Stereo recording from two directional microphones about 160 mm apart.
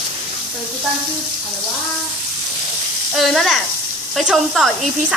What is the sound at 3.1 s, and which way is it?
Speech, centre (ahead or behind).